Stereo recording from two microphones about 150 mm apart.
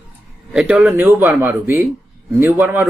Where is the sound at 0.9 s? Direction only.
15° right (ahead or behind).